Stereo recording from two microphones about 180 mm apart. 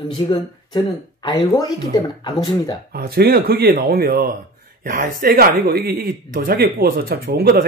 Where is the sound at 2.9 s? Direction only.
55° right (ahead or behind).